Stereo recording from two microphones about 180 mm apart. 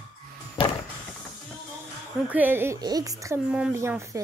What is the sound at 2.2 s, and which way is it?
Speech, 10° right (ahead or behind).